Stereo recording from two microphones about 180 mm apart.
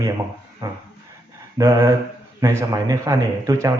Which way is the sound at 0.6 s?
20° right (ahead or behind).